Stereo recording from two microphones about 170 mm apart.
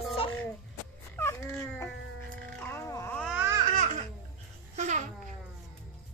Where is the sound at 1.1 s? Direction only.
15° left (ahead or behind).